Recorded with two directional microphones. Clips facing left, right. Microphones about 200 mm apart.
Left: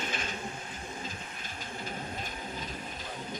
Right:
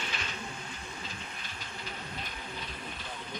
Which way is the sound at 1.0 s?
45° left (ahead or behind).